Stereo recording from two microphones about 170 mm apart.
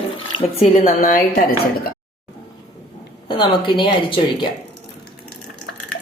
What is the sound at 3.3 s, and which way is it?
A woman's voice, 30° left (ahead or behind).